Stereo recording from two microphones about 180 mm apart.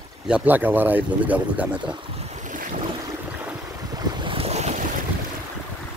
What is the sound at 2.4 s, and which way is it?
Boat, 45° right (ahead or behind).